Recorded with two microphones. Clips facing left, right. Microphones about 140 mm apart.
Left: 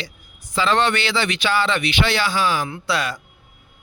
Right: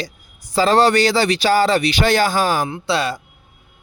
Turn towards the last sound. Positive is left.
turn(degrees=-30)  # may be behind; listen again after turning